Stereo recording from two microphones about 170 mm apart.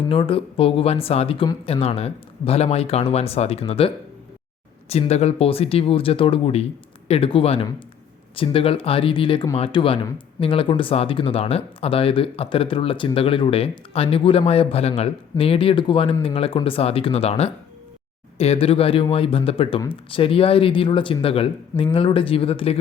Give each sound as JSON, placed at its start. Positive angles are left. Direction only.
{"t": 0.1, "sound": "speech", "side_deg": 30}